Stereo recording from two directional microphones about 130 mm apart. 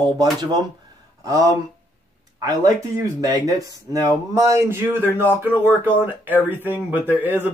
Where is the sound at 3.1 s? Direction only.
25° right (ahead or behind).